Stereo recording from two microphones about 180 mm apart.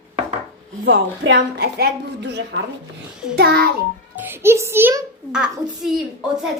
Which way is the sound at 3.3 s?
60° right (ahead or behind).